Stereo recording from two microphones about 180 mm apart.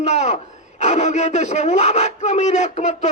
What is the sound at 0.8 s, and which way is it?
A man's voice, 40° left (ahead or behind).